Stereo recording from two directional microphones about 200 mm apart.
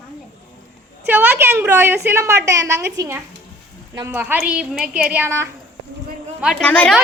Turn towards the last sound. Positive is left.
turn(degrees=5)  # may be behind; listen again after turning